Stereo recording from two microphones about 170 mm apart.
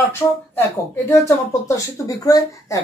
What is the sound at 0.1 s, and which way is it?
Speech, 15° left (ahead or behind).